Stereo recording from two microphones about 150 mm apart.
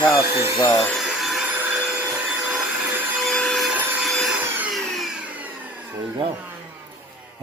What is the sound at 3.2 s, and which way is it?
Wood, 5° left (ahead or behind).